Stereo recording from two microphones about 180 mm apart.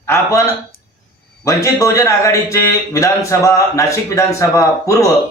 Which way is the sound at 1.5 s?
15° left (ahead or behind).